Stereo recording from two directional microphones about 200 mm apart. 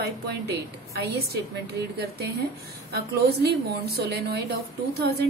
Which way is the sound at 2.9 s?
55° right (ahead or behind).